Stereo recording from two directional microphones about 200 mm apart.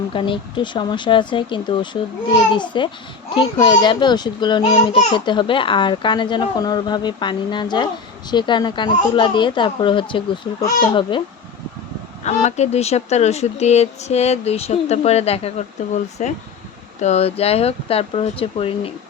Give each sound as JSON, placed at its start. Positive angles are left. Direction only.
{"t": 0.1, "sound": "a child's voice", "side_deg": 25}
{"t": 12.2, "sound": "speech", "side_deg": 35}